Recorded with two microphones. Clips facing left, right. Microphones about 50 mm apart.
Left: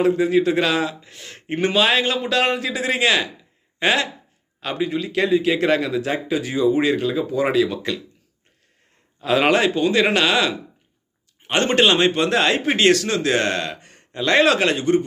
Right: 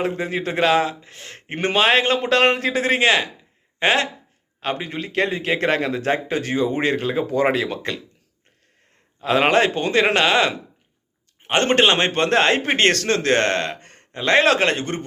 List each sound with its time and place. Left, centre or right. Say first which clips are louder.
0.0 s a man's voice: left 7 dB; right
9.2 s a man's voice: left 1 dB; right
9.6 s a man's voice: even; right